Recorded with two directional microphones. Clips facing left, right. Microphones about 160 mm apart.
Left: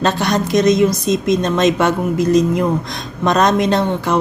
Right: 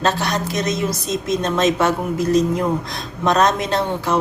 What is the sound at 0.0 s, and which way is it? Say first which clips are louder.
A woman's voice: left 4 dB; 5° right (ahead or behind).